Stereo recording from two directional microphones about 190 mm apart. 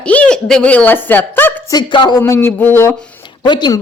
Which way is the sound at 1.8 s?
20° left (ahead or behind).